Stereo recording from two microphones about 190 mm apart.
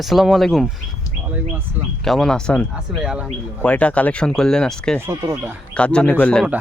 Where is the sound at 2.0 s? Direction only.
Centre (ahead or behind).